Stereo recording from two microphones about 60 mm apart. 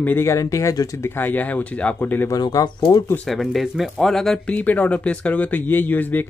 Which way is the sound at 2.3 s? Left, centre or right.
Left.